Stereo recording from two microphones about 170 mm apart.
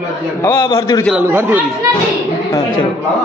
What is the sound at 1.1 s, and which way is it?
Speech, 10° right (ahead or behind).